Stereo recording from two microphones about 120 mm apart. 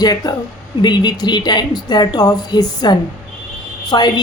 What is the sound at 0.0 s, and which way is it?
A woman's voice, 35° left (ahead or behind).